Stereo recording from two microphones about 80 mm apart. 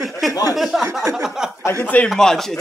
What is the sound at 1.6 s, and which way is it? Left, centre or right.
Speech, left.